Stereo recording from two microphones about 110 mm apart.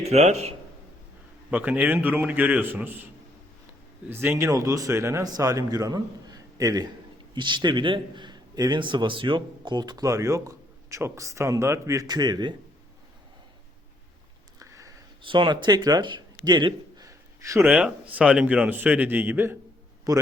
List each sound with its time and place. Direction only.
0.0 s a man's voice: 80° right
1.5 s speech: 15° right (ahead or behind)
4.1 s a man's voice: 20° right (ahead or behind)
7.3 s a man's voice: 45° right (ahead or behind)
14.6 s a sound: 30° right (ahead or behind)
15.2 s speech: 50° right (ahead or behind)
17.1 s a sound: 30° right (ahead or behind)
17.6 s speech: 10° right (ahead or behind)
20.1 s a man's voice: 35° right (ahead or behind)